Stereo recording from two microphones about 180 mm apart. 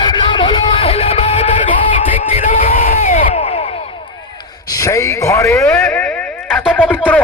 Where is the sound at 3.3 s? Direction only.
30° left (ahead or behind).